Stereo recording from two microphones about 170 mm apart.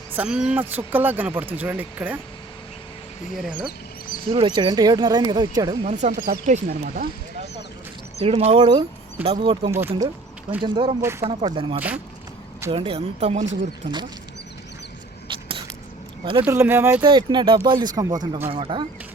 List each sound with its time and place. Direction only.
0.1 s speech: 10° right (ahead or behind)
3.3 s speech: centre (ahead or behind)
3.7 s a sound: 60° left (ahead or behind)
4.3 s speech: 30° right (ahead or behind)
5.8 s speech: 45° right (ahead or behind)
6.2 s speech: 60° right (ahead or behind)
8.2 s speech: 40° right (ahead or behind)
11.0 s speech: 15° right (ahead or behind)
11.4 s speech: 30° right (ahead or behind)
15.3 s a sound: 30° right (ahead or behind)
16.4 s speech: 15° right (ahead or behind)
17.0 s speech: 25° right (ahead or behind)
18.5 s speech: 30° right (ahead or behind)